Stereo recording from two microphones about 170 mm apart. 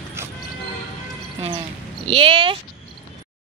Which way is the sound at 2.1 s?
30° right (ahead or behind).